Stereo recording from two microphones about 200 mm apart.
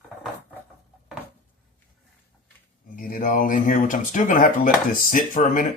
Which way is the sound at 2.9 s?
45° left (ahead or behind).